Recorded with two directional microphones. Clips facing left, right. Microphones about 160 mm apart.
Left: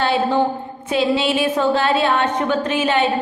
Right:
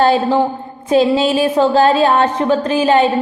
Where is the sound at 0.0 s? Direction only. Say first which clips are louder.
Right 5 dB; 40° right (ahead or behind).